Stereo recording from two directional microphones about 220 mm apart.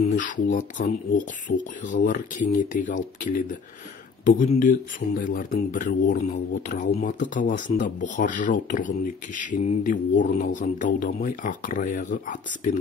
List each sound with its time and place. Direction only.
0.0 s speech: 35° left (ahead or behind)